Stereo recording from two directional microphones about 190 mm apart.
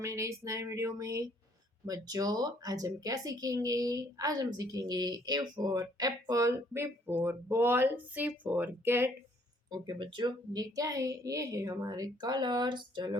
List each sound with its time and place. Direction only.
0.0 s a woman's voice: 15° right (ahead or behind)
9.6 s a woman's voice: 20° right (ahead or behind)